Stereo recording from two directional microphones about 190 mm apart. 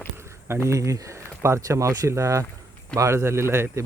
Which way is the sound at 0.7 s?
15° right (ahead or behind).